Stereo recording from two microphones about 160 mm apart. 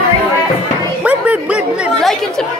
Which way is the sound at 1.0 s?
10° right (ahead or behind).